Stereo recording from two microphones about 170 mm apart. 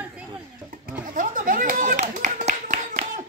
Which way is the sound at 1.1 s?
50° right (ahead or behind).